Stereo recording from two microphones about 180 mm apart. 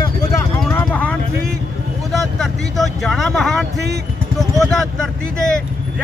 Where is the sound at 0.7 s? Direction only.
10° left (ahead or behind).